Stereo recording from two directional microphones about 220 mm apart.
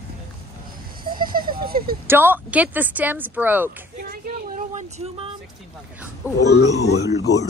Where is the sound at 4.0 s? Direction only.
40° right (ahead or behind).